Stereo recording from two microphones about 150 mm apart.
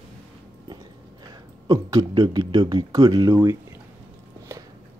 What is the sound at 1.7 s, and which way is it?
Speech, 25° right (ahead or behind).